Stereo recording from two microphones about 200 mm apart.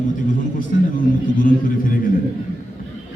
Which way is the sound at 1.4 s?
45° left (ahead or behind).